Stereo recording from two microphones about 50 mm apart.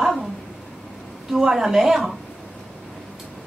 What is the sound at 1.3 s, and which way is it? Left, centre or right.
Speech, centre.